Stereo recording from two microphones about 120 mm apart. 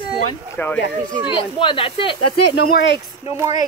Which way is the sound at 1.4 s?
45° left (ahead or behind).